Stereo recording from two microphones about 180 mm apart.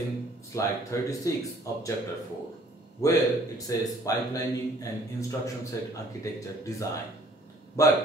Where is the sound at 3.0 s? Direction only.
20° left (ahead or behind).